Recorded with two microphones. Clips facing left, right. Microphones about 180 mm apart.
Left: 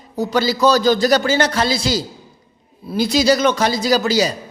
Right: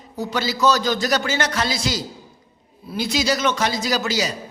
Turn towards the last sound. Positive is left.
turn(degrees=35)  # may be behind; listen again after turning